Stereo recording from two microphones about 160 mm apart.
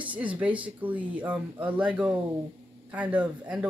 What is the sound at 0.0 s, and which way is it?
Speech, 10° right (ahead or behind).